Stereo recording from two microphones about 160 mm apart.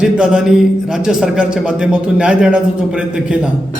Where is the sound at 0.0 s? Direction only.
5° right (ahead or behind).